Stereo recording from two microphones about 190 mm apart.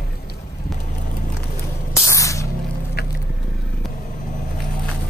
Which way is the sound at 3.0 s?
55° left (ahead or behind).